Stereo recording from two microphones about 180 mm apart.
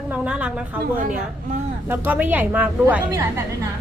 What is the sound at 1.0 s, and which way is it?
Speech, 50° right (ahead or behind).